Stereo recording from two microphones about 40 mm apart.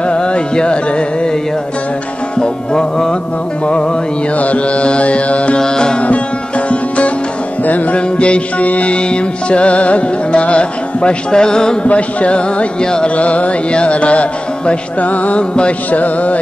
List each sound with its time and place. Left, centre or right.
0.1 s carnatic music: left
2.3 s music: centre
4.4 s music: left
5.6 s speech: centre
7.6 s music: left; by 11.8 s centre
11.8 s speech: left
13.1 s music: left